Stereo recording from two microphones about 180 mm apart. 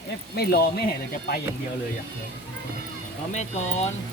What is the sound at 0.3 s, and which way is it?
Speech, 60° left (ahead or behind).